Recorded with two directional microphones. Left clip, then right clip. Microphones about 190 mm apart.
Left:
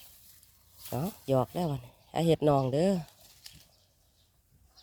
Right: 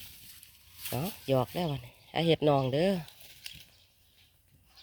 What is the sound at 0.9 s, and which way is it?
Speech, 10° left (ahead or behind).